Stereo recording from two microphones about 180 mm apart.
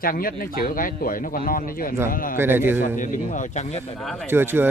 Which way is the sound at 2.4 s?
10° right (ahead or behind).